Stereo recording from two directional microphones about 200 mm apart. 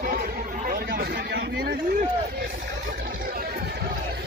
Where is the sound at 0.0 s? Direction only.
45° right (ahead or behind).